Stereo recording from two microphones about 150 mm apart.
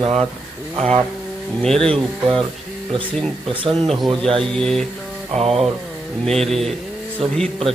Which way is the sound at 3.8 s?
Centre (ahead or behind).